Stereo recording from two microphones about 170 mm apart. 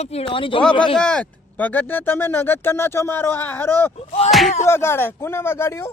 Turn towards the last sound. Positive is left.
turn(degrees=15)  # may be behind; listen again after turning